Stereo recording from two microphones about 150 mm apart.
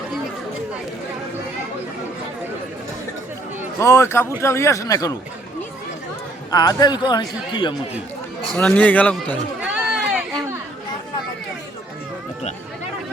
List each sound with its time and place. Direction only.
3.8 s a man's voice: 20° left (ahead or behind)
6.5 s a man's voice: 25° left (ahead or behind)
8.4 s a man's voice: 5° left (ahead or behind)
9.6 s run: 5° right (ahead or behind)